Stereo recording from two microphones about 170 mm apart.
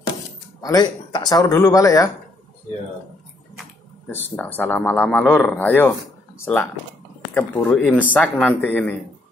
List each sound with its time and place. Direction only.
0.6 s speech: 25° left (ahead or behind)
4.4 s speech: 10° left (ahead or behind)